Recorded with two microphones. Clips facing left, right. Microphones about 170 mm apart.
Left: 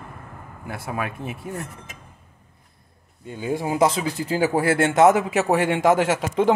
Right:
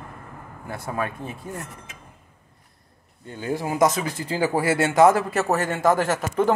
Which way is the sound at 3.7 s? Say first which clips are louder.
Even; 30° left (ahead or behind).